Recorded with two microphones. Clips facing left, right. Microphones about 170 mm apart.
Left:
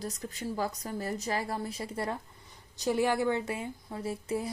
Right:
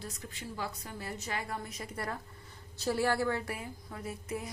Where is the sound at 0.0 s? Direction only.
40° left (ahead or behind).